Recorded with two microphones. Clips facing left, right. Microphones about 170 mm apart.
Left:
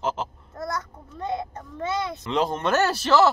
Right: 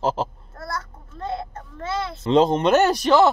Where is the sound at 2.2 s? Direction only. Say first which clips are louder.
Right 11 dB; 30° right (ahead or behind).